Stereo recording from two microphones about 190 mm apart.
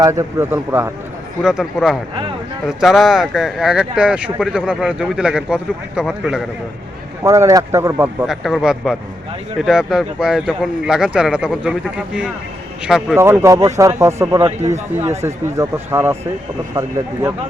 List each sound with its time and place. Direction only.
0.0 s speech: 15° right (ahead or behind)
7.2 s speech: 15° right (ahead or behind)
8.3 s speech: centre (ahead or behind)
13.4 s speech: 15° right (ahead or behind)